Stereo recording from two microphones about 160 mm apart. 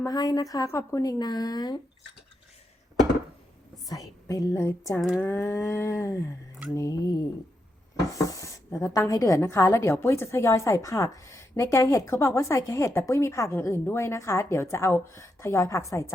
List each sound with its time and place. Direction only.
0.0 s speech: 25° left (ahead or behind)
4.3 s speech: 20° left (ahead or behind)
4.9 s speech: 5° right (ahead or behind)
5.2 s a woman's voice: 10° left (ahead or behind)
8.3 s a woman's voice: 20° left (ahead or behind)